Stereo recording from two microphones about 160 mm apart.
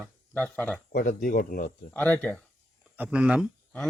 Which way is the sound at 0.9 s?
55° left (ahead or behind).